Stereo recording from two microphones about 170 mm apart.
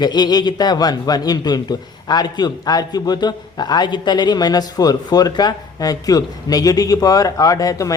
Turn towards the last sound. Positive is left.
turn(degrees=20)  # may be behind; listen again after turning